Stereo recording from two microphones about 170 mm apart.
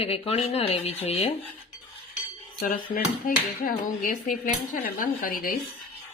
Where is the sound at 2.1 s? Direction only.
55° left (ahead or behind).